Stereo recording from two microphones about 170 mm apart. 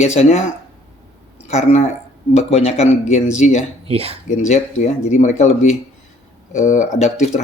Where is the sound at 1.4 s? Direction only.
40° left (ahead or behind).